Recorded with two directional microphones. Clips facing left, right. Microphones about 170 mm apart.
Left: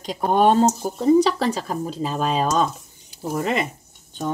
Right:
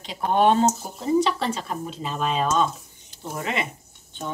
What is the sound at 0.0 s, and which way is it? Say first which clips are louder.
Speech: left 2 dB; 40° left (ahead or behind).